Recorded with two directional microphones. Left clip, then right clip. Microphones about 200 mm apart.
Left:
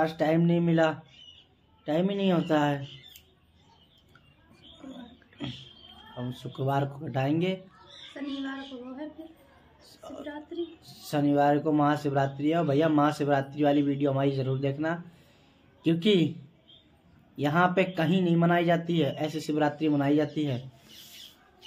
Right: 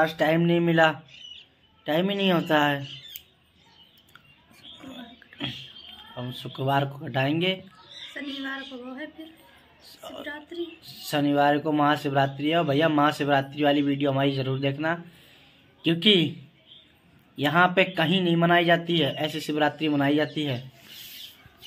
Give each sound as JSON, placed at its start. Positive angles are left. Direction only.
{"t": 0.0, "sound": "speech", "side_deg": 0}
{"t": 6.4, "sound": "speech", "side_deg": -5}
{"t": 8.1, "sound": "a sound", "side_deg": 20}
{"t": 11.0, "sound": "speech", "side_deg": -5}
{"t": 17.4, "sound": "speech", "side_deg": -5}